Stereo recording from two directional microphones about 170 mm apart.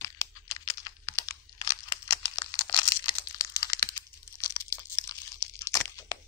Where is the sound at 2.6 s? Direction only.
20° left (ahead or behind).